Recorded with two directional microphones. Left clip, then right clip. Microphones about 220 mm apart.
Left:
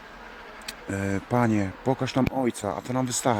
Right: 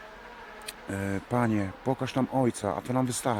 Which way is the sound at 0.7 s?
5° right (ahead or behind).